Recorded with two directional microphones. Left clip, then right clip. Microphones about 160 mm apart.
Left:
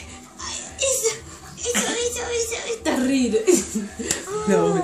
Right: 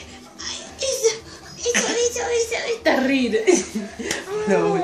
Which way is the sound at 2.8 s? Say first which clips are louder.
Right 3 dB; 45° left (ahead or behind).